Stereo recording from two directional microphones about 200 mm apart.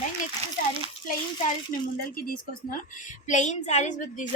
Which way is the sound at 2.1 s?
45° left (ahead or behind).